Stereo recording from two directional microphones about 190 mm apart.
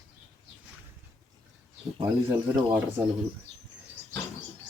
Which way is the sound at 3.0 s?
10° right (ahead or behind).